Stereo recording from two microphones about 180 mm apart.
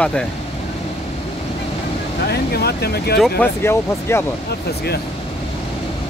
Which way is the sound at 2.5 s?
60° left (ahead or behind).